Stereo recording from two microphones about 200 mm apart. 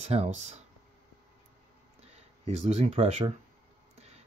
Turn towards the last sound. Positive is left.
turn(degrees=-30)  # may be behind; listen again after turning